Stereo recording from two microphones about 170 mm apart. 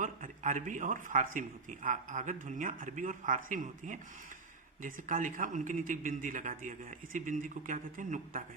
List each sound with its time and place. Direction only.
0.0 s speech: 50° right (ahead or behind)